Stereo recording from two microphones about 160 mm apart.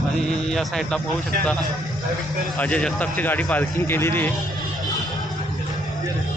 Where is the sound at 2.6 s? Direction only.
5° left (ahead or behind).